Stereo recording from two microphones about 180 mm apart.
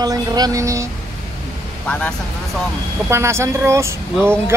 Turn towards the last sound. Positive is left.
turn(degrees=-15)  # may be behind; listen again after turning